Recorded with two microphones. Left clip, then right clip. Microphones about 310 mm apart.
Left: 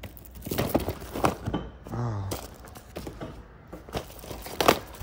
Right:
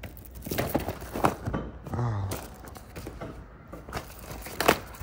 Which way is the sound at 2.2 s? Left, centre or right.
Centre.